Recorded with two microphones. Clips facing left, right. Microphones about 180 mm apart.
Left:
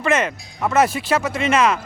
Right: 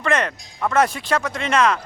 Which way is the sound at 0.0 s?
5° left (ahead or behind).